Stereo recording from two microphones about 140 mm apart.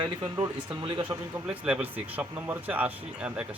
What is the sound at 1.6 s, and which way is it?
Speech, 10° right (ahead or behind).